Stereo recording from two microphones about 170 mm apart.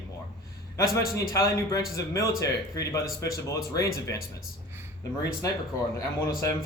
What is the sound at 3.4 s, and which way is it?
Speech, 20° left (ahead or behind).